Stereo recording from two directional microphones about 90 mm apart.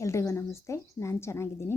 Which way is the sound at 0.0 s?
30° left (ahead or behind).